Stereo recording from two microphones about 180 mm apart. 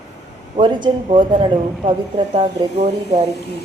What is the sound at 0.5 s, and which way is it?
Speech, 30° right (ahead or behind).